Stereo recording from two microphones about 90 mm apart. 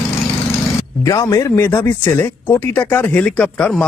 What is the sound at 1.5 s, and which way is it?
Speech, 25° left (ahead or behind).